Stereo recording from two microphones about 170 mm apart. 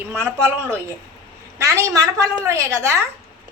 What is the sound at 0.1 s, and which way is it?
Speech, 15° right (ahead or behind).